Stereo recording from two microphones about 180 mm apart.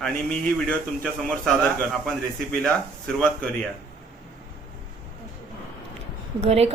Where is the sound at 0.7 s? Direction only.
5° left (ahead or behind).